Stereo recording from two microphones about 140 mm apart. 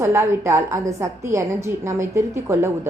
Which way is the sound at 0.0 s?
20° right (ahead or behind).